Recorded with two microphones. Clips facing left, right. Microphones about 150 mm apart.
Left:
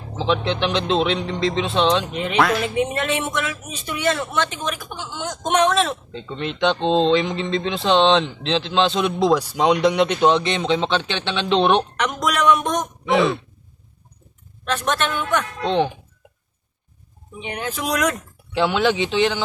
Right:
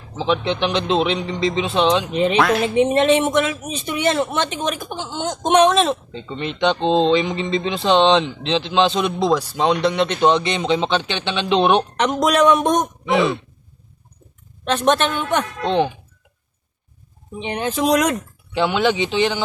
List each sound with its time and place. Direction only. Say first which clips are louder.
0.2 s speech: right 1 dB; centre (ahead or behind)
2.0 s a woman's voice: right 3 dB; 20° right (ahead or behind)
6.1 s speech: right 1 dB; centre (ahead or behind)
11.9 s a woman's voice: right 5 dB; 25° right (ahead or behind)
13.1 s speech: left 1 dB; centre (ahead or behind)
14.6 s a woman's voice: right 5 dB; 20° right (ahead or behind)
15.6 s speech: right 1 dB; centre (ahead or behind)
17.4 s a woman's voice: right 6 dB; 25° right (ahead or behind)
18.5 s speech: right 1 dB; centre (ahead or behind)